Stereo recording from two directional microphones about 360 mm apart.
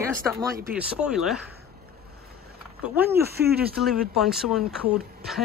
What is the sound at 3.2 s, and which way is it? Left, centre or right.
Speech, right.